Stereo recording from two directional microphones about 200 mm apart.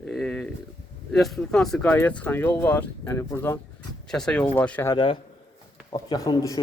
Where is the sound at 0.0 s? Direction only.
5° left (ahead or behind).